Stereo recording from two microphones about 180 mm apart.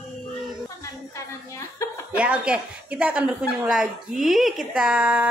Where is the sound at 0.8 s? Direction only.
15° left (ahead or behind).